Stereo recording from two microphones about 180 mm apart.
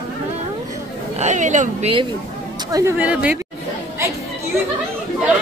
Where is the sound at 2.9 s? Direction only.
10° right (ahead or behind).